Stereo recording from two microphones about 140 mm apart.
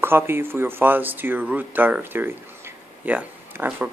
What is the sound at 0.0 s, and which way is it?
Speech, 15° right (ahead or behind).